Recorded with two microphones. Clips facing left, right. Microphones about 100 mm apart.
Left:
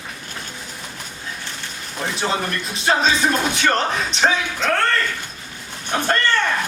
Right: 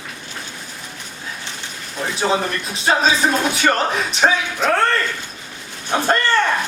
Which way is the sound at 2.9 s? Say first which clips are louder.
Right 1 dB; 5° right (ahead or behind).